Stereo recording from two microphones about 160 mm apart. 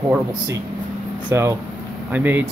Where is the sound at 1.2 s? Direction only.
15° right (ahead or behind).